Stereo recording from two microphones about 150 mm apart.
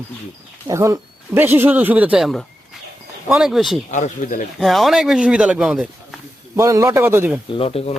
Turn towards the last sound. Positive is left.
turn(degrees=40)  # may be behind; listen again after turning